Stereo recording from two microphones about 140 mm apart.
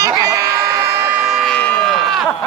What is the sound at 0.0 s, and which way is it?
Crowd, 25° right (ahead or behind).